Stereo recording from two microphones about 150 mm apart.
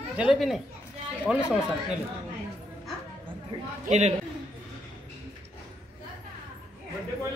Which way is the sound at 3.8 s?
50° right (ahead or behind).